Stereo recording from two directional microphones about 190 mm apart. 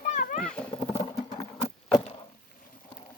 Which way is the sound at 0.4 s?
5° left (ahead or behind).